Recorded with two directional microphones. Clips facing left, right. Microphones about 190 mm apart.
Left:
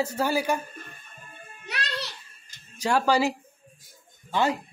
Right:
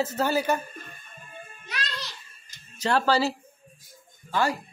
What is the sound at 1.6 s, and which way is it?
Music, 65° left (ahead or behind).